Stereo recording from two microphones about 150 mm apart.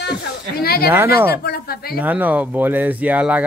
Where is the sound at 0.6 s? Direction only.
90° left.